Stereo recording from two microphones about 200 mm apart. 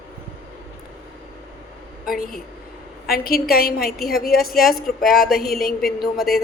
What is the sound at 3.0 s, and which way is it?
A woman's voice, 50° left (ahead or behind).